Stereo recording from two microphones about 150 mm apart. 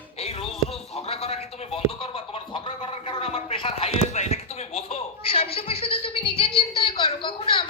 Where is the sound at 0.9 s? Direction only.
40° left (ahead or behind).